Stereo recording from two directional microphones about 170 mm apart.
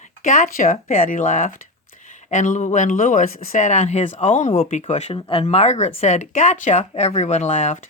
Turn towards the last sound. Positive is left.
turn(degrees=45)  # may be behind; listen again after turning